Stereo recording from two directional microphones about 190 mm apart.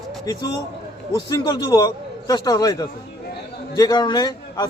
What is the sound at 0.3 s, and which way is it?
Speech, 20° left (ahead or behind).